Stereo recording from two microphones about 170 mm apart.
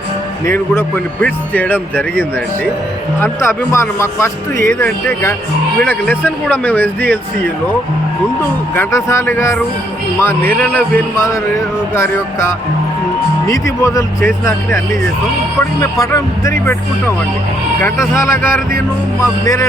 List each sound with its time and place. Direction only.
0.8 s speech: 10° left (ahead or behind)
3.4 s speech: 15° left (ahead or behind)
15.8 s speech: 20° left (ahead or behind)